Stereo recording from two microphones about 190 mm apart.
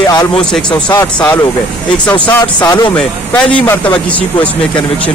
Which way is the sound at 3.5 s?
5° left (ahead or behind).